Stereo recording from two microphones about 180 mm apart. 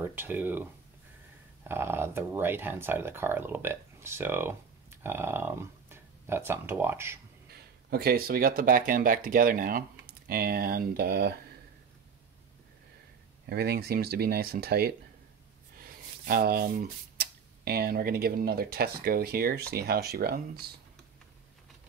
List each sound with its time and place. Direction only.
0.0 s speech: 10° right (ahead or behind)
1.7 s speech: 15° right (ahead or behind)
7.9 s speech: 55° right (ahead or behind)
13.5 s speech: 60° right (ahead or behind)